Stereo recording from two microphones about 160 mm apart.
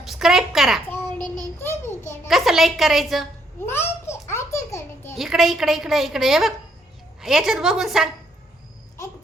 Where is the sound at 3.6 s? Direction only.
15° left (ahead or behind).